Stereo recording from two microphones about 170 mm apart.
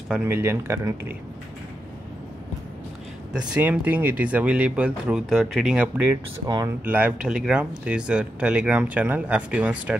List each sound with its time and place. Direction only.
0.1 s speech: 15° right (ahead or behind)
3.3 s speech: 5° right (ahead or behind)
6.4 s speech: 20° right (ahead or behind)
6.8 s speech: 10° right (ahead or behind)